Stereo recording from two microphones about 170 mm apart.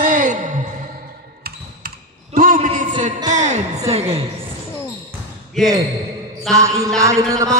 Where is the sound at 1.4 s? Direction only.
55° right (ahead or behind).